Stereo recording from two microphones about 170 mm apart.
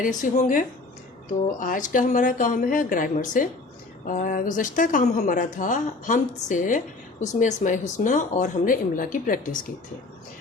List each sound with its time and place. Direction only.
0.0 s speech: 50° left (ahead or behind)